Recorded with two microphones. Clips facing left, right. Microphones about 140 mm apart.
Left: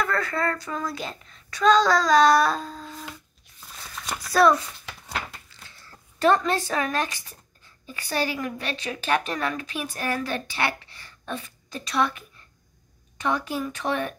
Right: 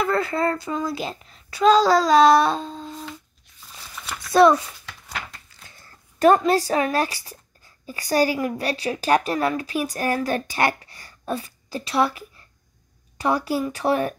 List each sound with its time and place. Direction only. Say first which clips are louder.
0.0 s a child's voice: right 4 dB; 25° right (ahead or behind)
4.3 s a child's voice: right 4 dB; 25° right (ahead or behind)
6.1 s a woman's voice: right 5 dB; 40° right (ahead or behind)